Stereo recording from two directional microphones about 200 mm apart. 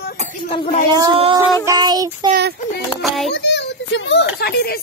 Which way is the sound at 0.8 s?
25° right (ahead or behind).